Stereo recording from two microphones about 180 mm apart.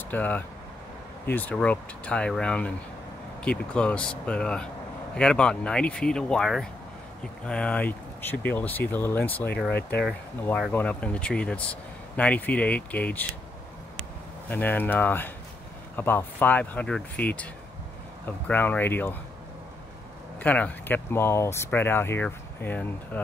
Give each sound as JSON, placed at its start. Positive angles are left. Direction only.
{"t": 0.1, "sound": "speech", "side_deg": 10}
{"t": 9.7, "sound": "speech", "side_deg": 65}
{"t": 10.0, "sound": "speech", "side_deg": 0}
{"t": 10.7, "sound": "speech", "side_deg": 10}
{"t": 14.5, "sound": "speech", "side_deg": 10}
{"t": 18.5, "sound": "speech", "side_deg": 10}
{"t": 20.3, "sound": "speech", "side_deg": 10}